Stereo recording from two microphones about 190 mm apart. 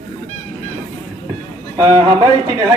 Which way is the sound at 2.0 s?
15° right (ahead or behind).